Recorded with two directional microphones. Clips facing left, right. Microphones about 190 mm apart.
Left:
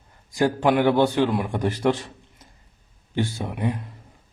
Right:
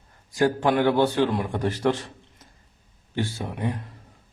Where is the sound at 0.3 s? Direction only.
15° left (ahead or behind).